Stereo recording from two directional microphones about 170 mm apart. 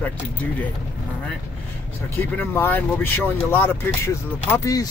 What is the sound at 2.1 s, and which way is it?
Speech, 10° left (ahead or behind).